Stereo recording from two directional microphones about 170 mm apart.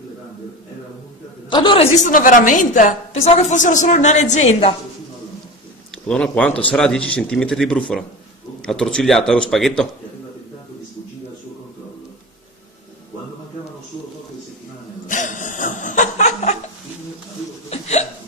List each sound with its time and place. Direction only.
1.5 s a woman's voice: 30° left (ahead or behind)
2.0 s a woman's voice: 50° left (ahead or behind)
6.0 s speech: 5° left (ahead or behind)
15.0 s laughter: 50° left (ahead or behind)
17.6 s hiccup: 40° left (ahead or behind)